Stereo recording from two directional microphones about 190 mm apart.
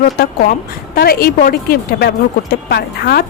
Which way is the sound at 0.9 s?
50° left (ahead or behind).